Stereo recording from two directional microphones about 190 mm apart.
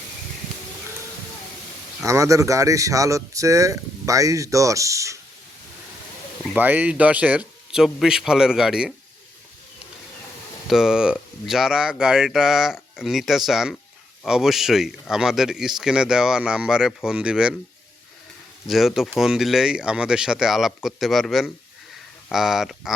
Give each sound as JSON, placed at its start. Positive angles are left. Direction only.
{"t": 2.0, "sound": "speech", "side_deg": -15}
{"t": 6.4, "sound": "speech", "side_deg": -5}
{"t": 10.7, "sound": "speech", "side_deg": -5}
{"t": 18.7, "sound": "speech", "side_deg": 0}